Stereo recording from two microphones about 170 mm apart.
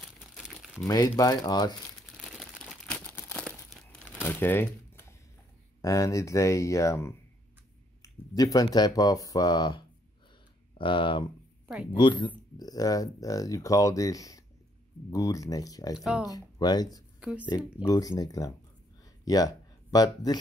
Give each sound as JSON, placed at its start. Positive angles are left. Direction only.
{"t": 0.2, "sound": "crumpling", "side_deg": -5}
{"t": 0.8, "sound": "speech", "side_deg": 20}
{"t": 2.2, "sound": "crumpling", "side_deg": -5}
{"t": 4.1, "sound": "a sound", "side_deg": 10}
{"t": 5.8, "sound": "speech", "side_deg": 20}
{"t": 11.6, "sound": "a sound", "side_deg": -5}
{"t": 11.9, "sound": "speech", "side_deg": 25}
{"t": 16.0, "sound": "speech", "side_deg": -5}
{"t": 16.3, "sound": "speech", "side_deg": 20}
{"t": 17.2, "sound": "speech", "side_deg": -5}
{"t": 17.8, "sound": "speech", "side_deg": 20}